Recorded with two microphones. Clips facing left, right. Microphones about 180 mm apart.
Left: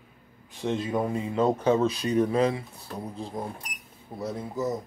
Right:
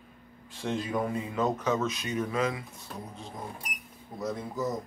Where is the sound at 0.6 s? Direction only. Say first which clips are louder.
Left 3 dB; 25° left (ahead or behind).